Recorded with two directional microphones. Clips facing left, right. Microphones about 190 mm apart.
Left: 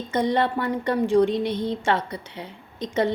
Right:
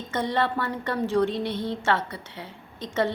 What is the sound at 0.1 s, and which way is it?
A woman's voice, 15° left (ahead or behind).